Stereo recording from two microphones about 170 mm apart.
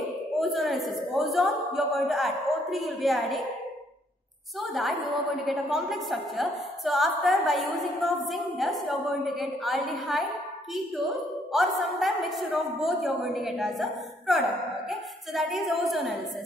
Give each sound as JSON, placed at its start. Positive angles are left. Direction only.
{"t": 0.4, "sound": "a woman's voice", "side_deg": 0}
{"t": 4.6, "sound": "a woman's voice", "side_deg": 0}